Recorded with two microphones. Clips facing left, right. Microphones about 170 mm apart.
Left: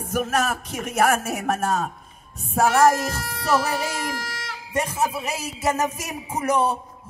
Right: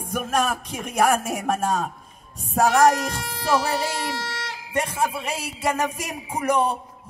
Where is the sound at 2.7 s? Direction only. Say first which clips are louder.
Even; 15° right (ahead or behind).